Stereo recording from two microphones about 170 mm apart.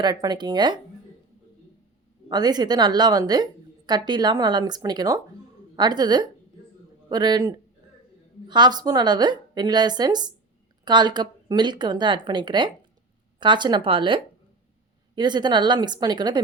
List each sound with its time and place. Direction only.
0.0 s a woman's voice: 25° right (ahead or behind)
2.3 s a woman's voice: 25° right (ahead or behind)